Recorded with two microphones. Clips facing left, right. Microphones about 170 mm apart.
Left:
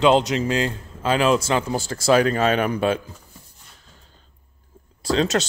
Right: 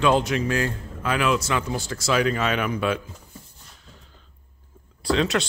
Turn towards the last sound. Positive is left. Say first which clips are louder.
# left 2 dB
turn(degrees=40)  # may be behind; listen again after turning